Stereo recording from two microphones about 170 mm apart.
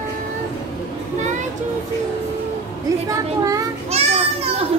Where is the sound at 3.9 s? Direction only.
40° right (ahead or behind).